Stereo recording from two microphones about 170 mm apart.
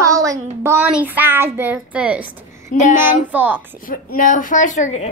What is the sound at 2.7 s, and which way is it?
Speech, 45° left (ahead or behind).